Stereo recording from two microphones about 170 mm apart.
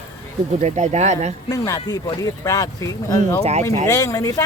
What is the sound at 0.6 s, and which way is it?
Speech, 40° right (ahead or behind).